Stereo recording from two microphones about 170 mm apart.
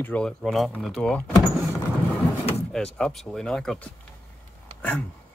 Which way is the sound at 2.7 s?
5° left (ahead or behind).